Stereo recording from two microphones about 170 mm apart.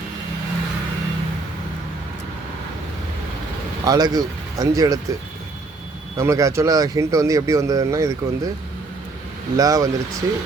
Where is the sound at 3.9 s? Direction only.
25° right (ahead or behind).